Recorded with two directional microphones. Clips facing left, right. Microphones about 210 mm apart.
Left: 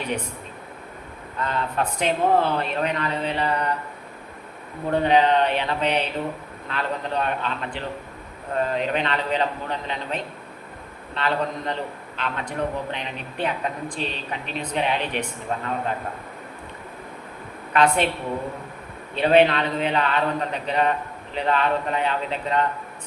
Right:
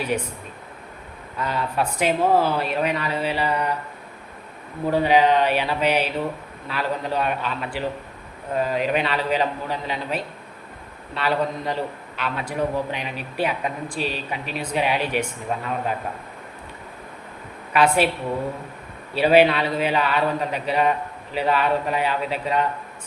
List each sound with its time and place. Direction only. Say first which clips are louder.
1.4 s speech: right 1 dB; 10° right (ahead or behind)
4.9 s speech: right 1 dB; 5° right (ahead or behind)
17.7 s speech: right 1 dB; 10° right (ahead or behind)
19.1 s speech: right 1 dB; 5° right (ahead or behind)